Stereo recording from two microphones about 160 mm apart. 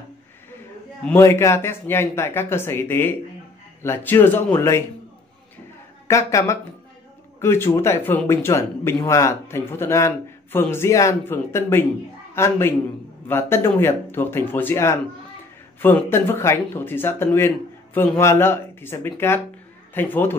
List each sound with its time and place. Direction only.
1.0 s speech: 15° left (ahead or behind)
6.0 s speech: 20° left (ahead or behind)